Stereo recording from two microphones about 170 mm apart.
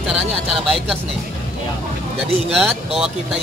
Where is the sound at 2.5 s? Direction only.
Centre (ahead or behind).